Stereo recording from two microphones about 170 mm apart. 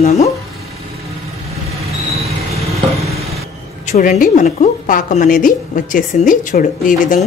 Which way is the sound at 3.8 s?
45° left (ahead or behind).